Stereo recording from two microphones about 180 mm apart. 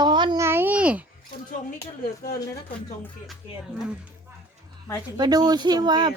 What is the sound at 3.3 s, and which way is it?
Speech, 5° right (ahead or behind).